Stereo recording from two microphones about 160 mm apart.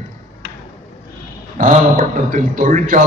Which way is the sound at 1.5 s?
50° right (ahead or behind).